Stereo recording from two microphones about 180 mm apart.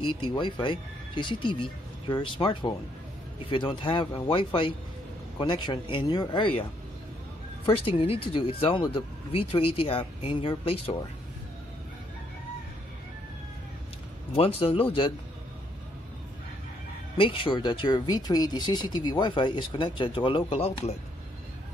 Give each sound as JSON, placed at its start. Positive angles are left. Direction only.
{"t": 0.1, "sound": "speech", "side_deg": 25}
{"t": 7.6, "sound": "speech", "side_deg": 30}
{"t": 14.3, "sound": "speech", "side_deg": 30}
{"t": 17.2, "sound": "speech", "side_deg": 30}